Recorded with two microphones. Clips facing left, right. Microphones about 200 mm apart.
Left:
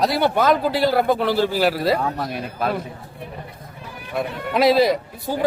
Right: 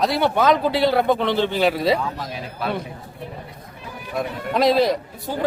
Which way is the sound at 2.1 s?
60° left (ahead or behind).